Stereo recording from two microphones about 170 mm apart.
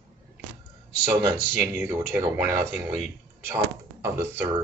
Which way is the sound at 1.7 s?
15° right (ahead or behind).